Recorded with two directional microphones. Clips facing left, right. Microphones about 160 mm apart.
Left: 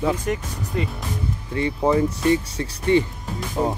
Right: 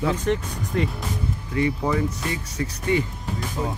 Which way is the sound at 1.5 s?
30° left (ahead or behind).